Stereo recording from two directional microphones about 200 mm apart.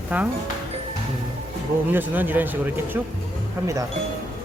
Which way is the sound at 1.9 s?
10° right (ahead or behind).